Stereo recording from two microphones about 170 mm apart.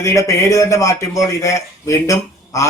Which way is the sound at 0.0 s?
20° left (ahead or behind).